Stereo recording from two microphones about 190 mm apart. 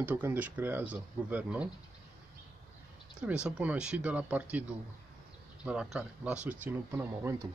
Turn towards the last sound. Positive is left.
turn(degrees=-15)  # may be behind; listen again after turning